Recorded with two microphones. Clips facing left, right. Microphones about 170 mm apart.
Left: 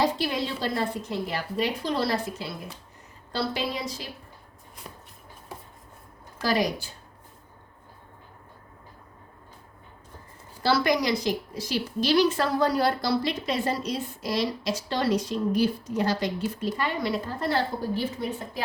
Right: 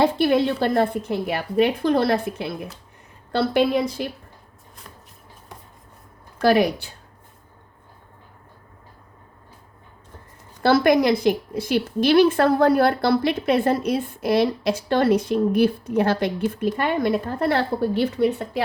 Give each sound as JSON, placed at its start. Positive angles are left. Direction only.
{"t": 0.0, "sound": "a woman's voice", "side_deg": -60}
{"t": 6.4, "sound": "a woman's voice", "side_deg": -60}
{"t": 10.6, "sound": "a woman's voice", "side_deg": -55}